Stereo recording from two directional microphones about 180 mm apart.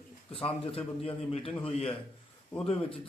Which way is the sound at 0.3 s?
30° left (ahead or behind).